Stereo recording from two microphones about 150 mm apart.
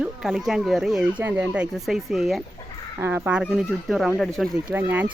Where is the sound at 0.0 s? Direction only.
5° right (ahead or behind).